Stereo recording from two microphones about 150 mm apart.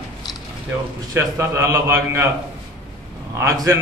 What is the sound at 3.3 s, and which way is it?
Speech, 20° right (ahead or behind).